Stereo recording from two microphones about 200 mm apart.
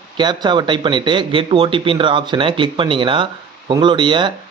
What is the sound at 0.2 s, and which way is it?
Speech, 20° right (ahead or behind).